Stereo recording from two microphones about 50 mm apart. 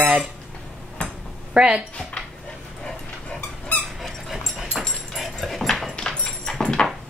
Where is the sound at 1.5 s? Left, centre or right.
Centre.